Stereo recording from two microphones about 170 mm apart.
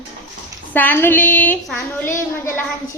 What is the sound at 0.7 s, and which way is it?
Speech, 10° left (ahead or behind).